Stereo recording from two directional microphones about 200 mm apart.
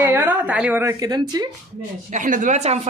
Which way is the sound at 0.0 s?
10° right (ahead or behind).